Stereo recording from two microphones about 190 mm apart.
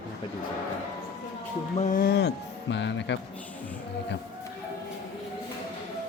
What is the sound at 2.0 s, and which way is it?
Speech, 60° left (ahead or behind).